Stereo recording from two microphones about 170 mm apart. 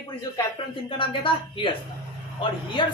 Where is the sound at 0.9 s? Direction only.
30° left (ahead or behind).